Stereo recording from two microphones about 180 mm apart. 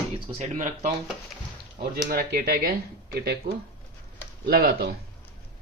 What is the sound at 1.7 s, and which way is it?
Speech, 55° right (ahead or behind).